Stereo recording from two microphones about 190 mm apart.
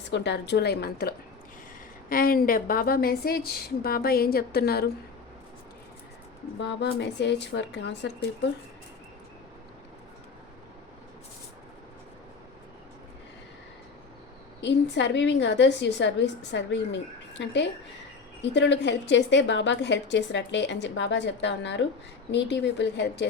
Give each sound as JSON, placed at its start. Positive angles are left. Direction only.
{"t": 0.1, "sound": "a woman's voice", "side_deg": 65}
{"t": 6.6, "sound": "speech", "side_deg": 65}
{"t": 14.6, "sound": "a woman's voice", "side_deg": 65}